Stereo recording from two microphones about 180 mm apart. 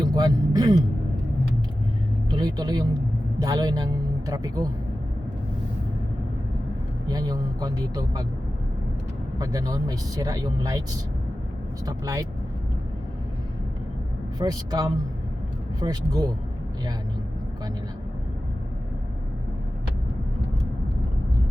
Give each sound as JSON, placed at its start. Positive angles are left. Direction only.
{"t": 0.0, "sound": "speech", "side_deg": -20}
{"t": 2.3, "sound": "speech", "side_deg": -20}
{"t": 7.1, "sound": "speech", "side_deg": -20}
{"t": 9.4, "sound": "speech", "side_deg": -20}
{"t": 11.9, "sound": "speech", "side_deg": -20}
{"t": 14.3, "sound": "speech", "side_deg": -20}